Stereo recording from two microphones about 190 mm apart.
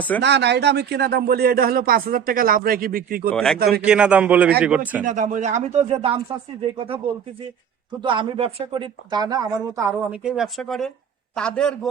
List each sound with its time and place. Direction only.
0.2 s speech: 65° right (ahead or behind)
3.3 s a man's voice: centre (ahead or behind)
5.0 s speech: 45° right (ahead or behind)
8.0 s a man's voice: 25° right (ahead or behind); by 11.9 s 5° left (ahead or behind)